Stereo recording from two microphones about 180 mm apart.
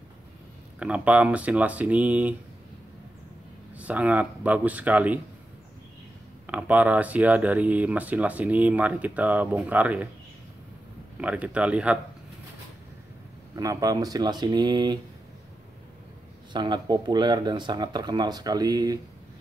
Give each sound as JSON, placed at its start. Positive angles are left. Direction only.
{"t": 0.7, "sound": "speech", "side_deg": -5}
{"t": 3.7, "sound": "speech", "side_deg": -10}
{"t": 6.4, "sound": "speech", "side_deg": -10}
{"t": 11.1, "sound": "speech", "side_deg": -5}
{"t": 13.6, "sound": "speech", "side_deg": -20}
{"t": 16.5, "sound": "speech", "side_deg": -25}